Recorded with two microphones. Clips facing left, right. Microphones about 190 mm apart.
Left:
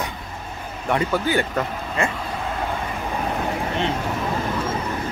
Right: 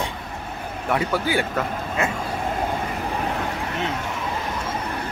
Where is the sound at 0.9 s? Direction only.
10° right (ahead or behind).